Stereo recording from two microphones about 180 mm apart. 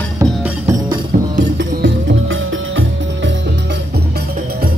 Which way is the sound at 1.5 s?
85° right.